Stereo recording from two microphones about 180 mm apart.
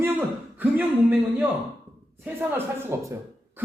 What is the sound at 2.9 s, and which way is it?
Speech, 15° right (ahead or behind).